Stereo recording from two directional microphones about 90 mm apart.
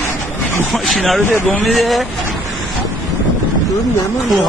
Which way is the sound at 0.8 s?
Centre (ahead or behind).